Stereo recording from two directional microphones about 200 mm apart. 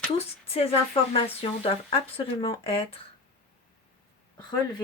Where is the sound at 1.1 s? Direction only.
30° left (ahead or behind).